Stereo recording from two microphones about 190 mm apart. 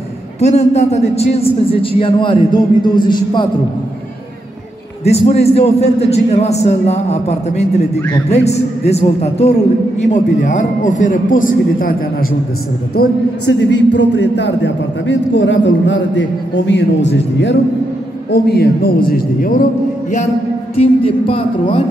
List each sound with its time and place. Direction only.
0.4 s a man's voice: 35° left (ahead or behind)
5.0 s a man's voice: 35° left (ahead or behind)
12.9 s a man's voice: 60° left (ahead or behind)
18.3 s a man's voice: 55° left (ahead or behind)
20.7 s a man's voice: 30° left (ahead or behind)